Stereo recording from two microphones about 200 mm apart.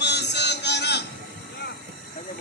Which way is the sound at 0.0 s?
60° left (ahead or behind).